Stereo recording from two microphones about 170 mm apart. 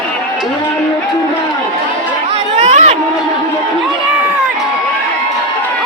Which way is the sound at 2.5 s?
40° right (ahead or behind).